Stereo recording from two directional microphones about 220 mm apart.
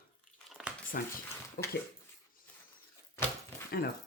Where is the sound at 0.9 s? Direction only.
45° left (ahead or behind).